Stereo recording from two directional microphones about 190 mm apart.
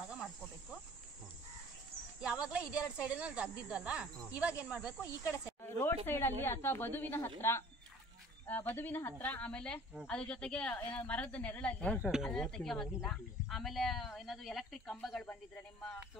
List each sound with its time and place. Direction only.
2.2 s speech: 5° right (ahead or behind)
5.0 s speech: 20° left (ahead or behind)